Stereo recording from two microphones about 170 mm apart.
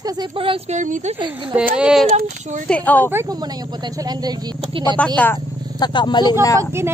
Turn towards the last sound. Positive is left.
turn(degrees=-15)  # may be behind; listen again after turning